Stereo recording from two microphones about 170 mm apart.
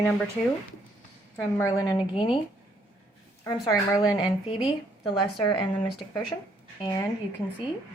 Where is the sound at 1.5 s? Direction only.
20° left (ahead or behind).